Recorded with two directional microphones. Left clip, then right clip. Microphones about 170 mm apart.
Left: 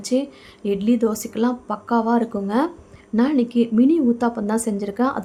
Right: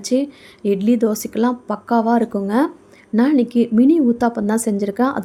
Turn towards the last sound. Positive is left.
turn(degrees=-25)  # may be behind; listen again after turning